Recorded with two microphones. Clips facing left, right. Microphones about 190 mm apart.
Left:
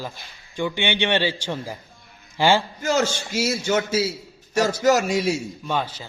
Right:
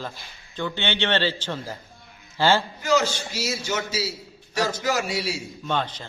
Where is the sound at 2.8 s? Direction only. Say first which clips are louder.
Even; 50° left (ahead or behind).